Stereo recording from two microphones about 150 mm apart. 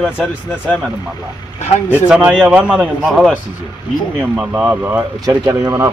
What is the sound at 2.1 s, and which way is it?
Speech, 5° right (ahead or behind).